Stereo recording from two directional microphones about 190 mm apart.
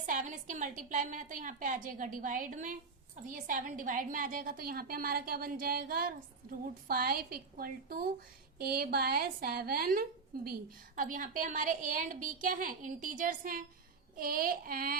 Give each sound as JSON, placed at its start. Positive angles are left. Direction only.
{"t": 0.0, "sound": "a woman's voice", "side_deg": -45}